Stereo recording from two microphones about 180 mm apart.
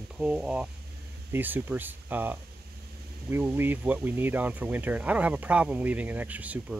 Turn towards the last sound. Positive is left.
turn(degrees=-10)  # may be behind; listen again after turning